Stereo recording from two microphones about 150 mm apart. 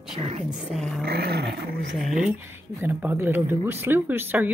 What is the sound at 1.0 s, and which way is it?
Roar, 90° right.